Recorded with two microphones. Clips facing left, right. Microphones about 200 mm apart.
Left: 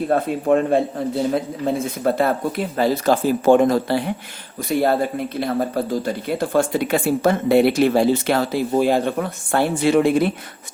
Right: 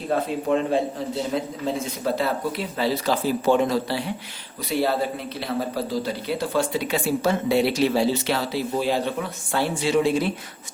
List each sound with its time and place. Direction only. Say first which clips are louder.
0.1 s speech: left 3 dB; 55° left (ahead or behind)